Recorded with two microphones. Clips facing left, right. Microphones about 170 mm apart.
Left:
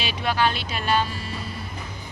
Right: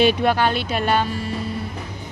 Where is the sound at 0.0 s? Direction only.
55° right (ahead or behind).